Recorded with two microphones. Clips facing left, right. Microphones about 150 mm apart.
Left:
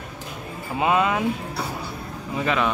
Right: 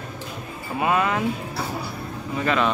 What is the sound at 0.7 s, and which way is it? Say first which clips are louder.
Speech: left 1 dB; 20° left (ahead or behind).